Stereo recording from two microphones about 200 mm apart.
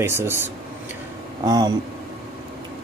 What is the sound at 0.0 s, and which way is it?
Speech, 10° right (ahead or behind).